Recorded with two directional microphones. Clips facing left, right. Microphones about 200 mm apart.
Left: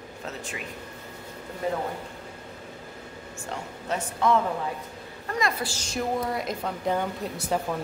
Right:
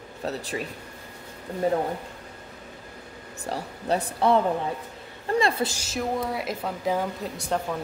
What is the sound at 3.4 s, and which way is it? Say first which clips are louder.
Speech: right 5 dB; 35° right (ahead or behind).